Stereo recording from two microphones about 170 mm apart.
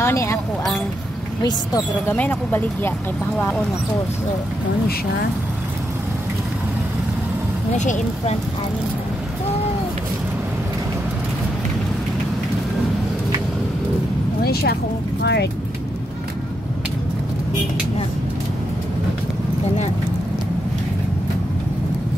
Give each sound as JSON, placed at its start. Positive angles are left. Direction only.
{"t": 0.0, "sound": "speech", "side_deg": 15}
{"t": 1.4, "sound": "speech", "side_deg": 20}
{"t": 2.1, "sound": "speech", "side_deg": 10}
{"t": 7.7, "sound": "speech", "side_deg": 45}
{"t": 14.4, "sound": "speech", "side_deg": 65}
{"t": 15.2, "sound": "speech", "side_deg": 80}